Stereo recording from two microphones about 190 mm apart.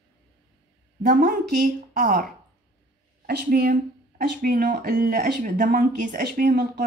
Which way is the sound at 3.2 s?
55° right (ahead or behind).